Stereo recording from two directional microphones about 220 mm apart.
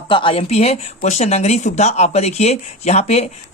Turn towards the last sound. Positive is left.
turn(degrees=30)  # may be behind; listen again after turning